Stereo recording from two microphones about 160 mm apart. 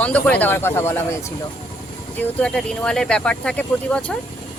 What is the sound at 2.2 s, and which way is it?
Speech, 5° left (ahead or behind).